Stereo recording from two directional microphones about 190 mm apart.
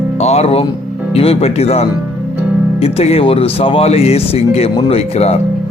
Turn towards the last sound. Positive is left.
turn(degrees=35)  # may be behind; listen again after turning